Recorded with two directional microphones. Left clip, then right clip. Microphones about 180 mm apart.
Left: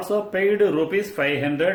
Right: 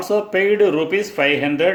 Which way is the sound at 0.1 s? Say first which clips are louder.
Right 4 dB; 30° right (ahead or behind).